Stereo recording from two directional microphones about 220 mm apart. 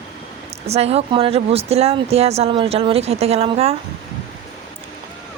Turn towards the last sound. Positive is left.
turn(degrees=-25)  # may be behind; listen again after turning